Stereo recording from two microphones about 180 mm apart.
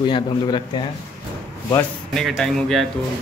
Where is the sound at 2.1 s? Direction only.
Centre (ahead or behind).